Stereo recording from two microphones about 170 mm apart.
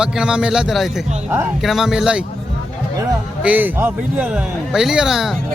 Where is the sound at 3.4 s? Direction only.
10° right (ahead or behind).